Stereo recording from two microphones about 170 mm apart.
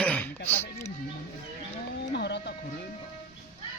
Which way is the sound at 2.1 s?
85° left.